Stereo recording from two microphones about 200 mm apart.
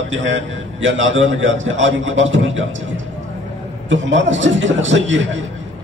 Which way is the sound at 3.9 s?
70° right (ahead or behind).